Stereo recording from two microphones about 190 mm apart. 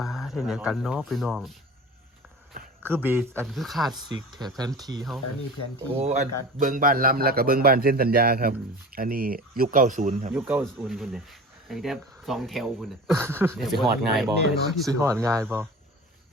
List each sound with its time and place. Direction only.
0.0 s speech: centre (ahead or behind)
2.8 s speech: 10° right (ahead or behind)
3.9 s speech: 20° right (ahead or behind)
6.0 s a man's voice: 35° right (ahead or behind)
10.3 s speech: 5° right (ahead or behind)
13.1 s speech: 10° right (ahead or behind)
13.6 s speech: centre (ahead or behind)
14.8 s speech: 15° right (ahead or behind)